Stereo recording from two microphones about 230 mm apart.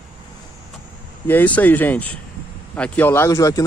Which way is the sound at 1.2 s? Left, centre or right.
Centre.